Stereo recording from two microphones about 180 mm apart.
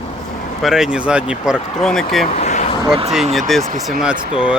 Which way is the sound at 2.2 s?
40° left (ahead or behind).